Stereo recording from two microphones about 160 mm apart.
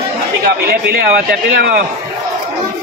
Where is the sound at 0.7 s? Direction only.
90° right.